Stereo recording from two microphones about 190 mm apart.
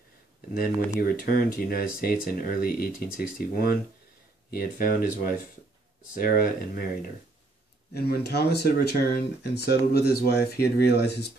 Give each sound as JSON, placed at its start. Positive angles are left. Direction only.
{"t": 0.6, "sound": "speech", "side_deg": 50}
{"t": 7.9, "sound": "speech", "side_deg": 60}